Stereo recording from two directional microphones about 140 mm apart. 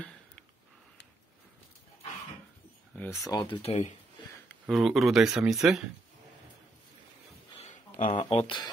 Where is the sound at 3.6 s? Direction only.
45° left (ahead or behind).